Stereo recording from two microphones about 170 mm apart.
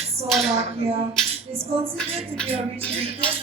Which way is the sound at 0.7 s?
35° right (ahead or behind).